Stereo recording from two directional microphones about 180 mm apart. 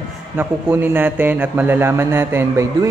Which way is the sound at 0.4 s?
10° right (ahead or behind).